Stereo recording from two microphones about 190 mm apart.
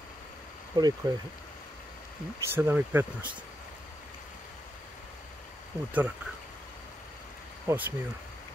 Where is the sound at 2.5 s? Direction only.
10° right (ahead or behind).